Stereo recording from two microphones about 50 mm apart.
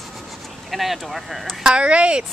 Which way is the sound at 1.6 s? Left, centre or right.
Centre.